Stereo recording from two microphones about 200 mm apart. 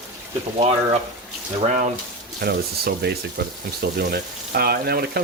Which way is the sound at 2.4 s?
50° right (ahead or behind).